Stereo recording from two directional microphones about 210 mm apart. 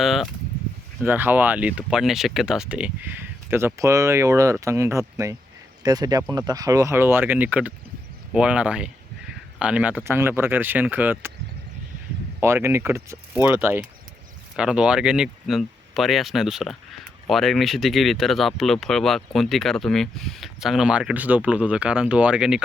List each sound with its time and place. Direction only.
0.0 s speech: centre (ahead or behind)
12.4 s speech: 10° right (ahead or behind)